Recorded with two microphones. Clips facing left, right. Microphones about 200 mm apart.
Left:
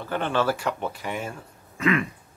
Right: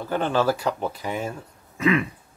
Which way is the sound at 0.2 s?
10° right (ahead or behind).